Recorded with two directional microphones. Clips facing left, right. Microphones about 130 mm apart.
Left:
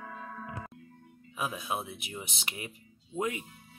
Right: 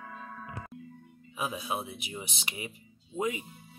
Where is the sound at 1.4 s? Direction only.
5° right (ahead or behind).